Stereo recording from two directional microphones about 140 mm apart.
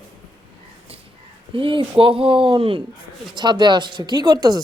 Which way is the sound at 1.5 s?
35° right (ahead or behind).